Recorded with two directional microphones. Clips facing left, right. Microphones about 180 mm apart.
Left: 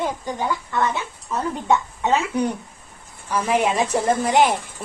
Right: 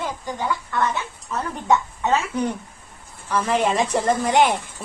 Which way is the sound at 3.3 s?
10° left (ahead or behind).